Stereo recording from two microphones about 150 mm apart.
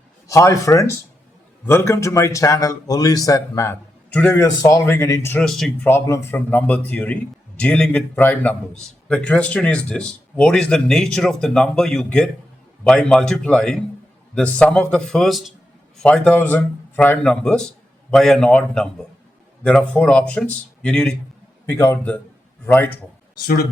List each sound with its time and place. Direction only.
0.3 s a man's voice: 20° left (ahead or behind)
5.4 s a man's voice: centre (ahead or behind)
5.9 s a man's voice: 20° left (ahead or behind)